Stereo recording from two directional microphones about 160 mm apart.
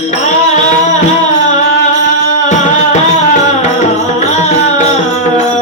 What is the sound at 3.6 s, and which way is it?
Music, 45° left (ahead or behind).